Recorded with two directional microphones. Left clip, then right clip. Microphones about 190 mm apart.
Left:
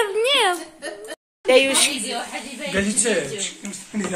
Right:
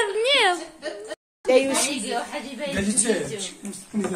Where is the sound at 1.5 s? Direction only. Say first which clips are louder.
Left 4 dB; 5° right (ahead or behind).